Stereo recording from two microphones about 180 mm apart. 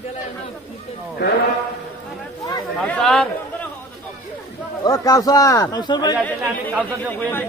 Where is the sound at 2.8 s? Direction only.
5° left (ahead or behind).